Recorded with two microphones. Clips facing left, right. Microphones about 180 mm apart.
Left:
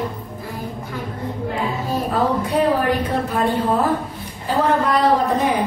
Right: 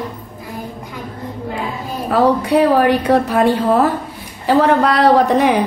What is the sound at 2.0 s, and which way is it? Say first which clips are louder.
A woman's voice: right 8 dB; 85° right.